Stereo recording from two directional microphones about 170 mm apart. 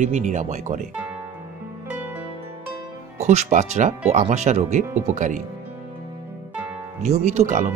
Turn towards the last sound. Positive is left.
turn(degrees=-45)  # may be behind; listen again after turning